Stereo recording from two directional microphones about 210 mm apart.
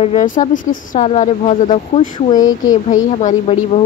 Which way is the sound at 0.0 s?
30° left (ahead or behind).